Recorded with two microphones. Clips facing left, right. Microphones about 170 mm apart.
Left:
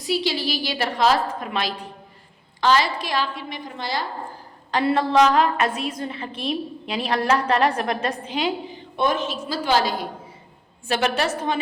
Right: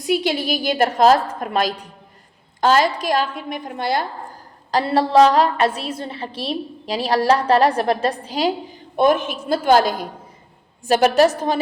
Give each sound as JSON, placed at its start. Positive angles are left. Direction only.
{"t": 0.1, "sound": "a woman's voice", "side_deg": -50}
{"t": 4.7, "sound": "a woman's voice", "side_deg": -35}